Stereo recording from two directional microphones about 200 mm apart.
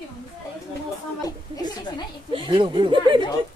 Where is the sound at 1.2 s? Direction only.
20° left (ahead or behind).